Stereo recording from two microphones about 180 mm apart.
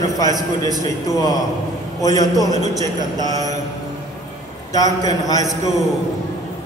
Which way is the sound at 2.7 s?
20° right (ahead or behind).